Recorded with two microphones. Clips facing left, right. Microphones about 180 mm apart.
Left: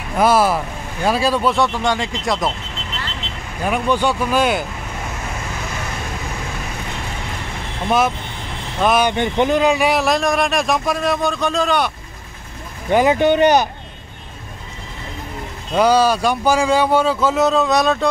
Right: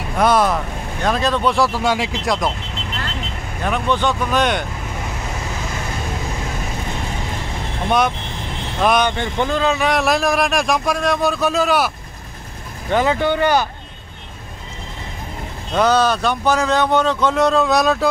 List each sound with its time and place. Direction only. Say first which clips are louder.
0.2 s speech: left 1 dB; 5° left (ahead or behind)
3.6 s speech: left 1 dB; 10° left (ahead or behind)
8.7 s speech: even; 5° left (ahead or behind)
9.1 s speech: left 4 dB; 20° left (ahead or behind); by 11.9 s 5° right (ahead or behind)
12.9 s speech: left 3 dB; 15° left (ahead or behind)
15.7 s speech: left 2 dB; 10° left (ahead or behind)